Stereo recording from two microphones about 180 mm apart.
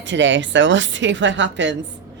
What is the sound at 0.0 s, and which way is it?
A woman's voice, 90° right.